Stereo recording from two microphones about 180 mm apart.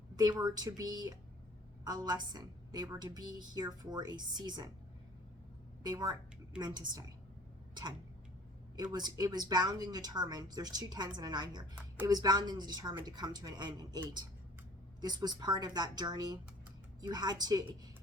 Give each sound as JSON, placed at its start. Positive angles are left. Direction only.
{"t": 0.2, "sound": "a woman's voice", "side_deg": -20}
{"t": 5.8, "sound": "a woman's voice", "side_deg": -20}
{"t": 8.7, "sound": "a woman's voice", "side_deg": -25}
{"t": 15.0, "sound": "a woman's voice", "side_deg": -25}